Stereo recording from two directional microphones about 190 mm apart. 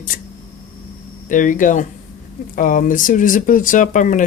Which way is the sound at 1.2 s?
45° left (ahead or behind).